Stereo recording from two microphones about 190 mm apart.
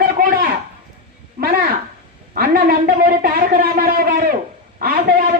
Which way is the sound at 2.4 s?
50° right (ahead or behind).